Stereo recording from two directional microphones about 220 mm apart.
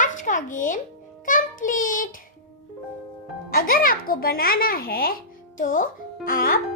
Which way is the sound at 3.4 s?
40° left (ahead or behind).